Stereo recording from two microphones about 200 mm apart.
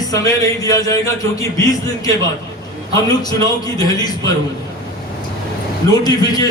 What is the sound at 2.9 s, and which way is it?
A man's voice, 20° left (ahead or behind).